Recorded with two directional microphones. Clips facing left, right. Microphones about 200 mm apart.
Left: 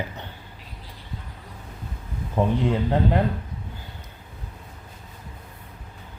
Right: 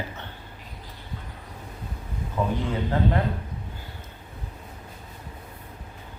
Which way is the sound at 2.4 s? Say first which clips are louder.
Left 4 dB; 35° left (ahead or behind).